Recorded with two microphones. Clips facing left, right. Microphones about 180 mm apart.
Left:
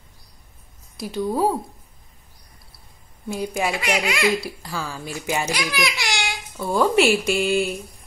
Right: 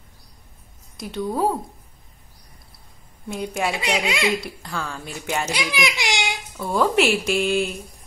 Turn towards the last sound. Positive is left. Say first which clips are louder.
# left 1 dB
turn(degrees=0)  # may be behind; listen again after turning